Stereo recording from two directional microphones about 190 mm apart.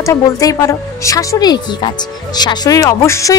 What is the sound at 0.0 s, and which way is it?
A woman's voice, 15° left (ahead or behind).